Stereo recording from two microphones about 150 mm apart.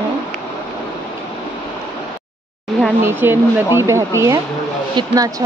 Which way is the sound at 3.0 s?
15° right (ahead or behind).